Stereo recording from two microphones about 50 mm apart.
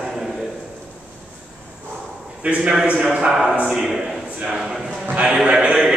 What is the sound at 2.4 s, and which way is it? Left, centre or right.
Speech, right.